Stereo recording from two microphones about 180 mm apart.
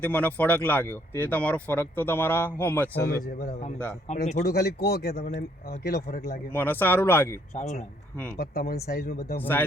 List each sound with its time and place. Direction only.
0.0 s speech: 10° left (ahead or behind)
3.1 s speech: 55° left (ahead or behind)
4.1 s a man's voice: 40° left (ahead or behind)
4.4 s speech: 60° left (ahead or behind)
6.5 s speech: 10° left (ahead or behind)
7.5 s a man's voice: 40° left (ahead or behind)
8.4 s speech: 60° left (ahead or behind)
9.4 s speech: 10° left (ahead or behind)